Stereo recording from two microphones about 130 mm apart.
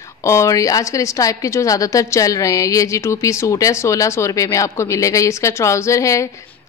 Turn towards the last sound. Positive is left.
turn(degrees=25)  # may be behind; listen again after turning